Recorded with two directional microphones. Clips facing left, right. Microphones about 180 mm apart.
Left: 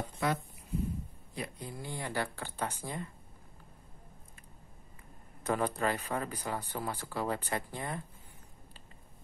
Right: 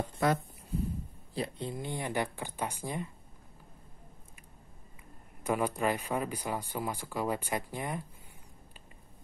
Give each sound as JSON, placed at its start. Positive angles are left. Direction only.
{"t": 0.2, "sound": "a sound", "side_deg": -45}
{"t": 1.3, "sound": "speech", "side_deg": -30}
{"t": 5.4, "sound": "speech", "side_deg": -10}